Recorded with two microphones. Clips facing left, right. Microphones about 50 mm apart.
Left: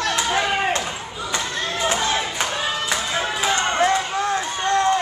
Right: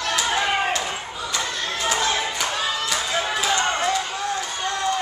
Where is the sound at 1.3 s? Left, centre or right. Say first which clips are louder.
Left 2 dB; left.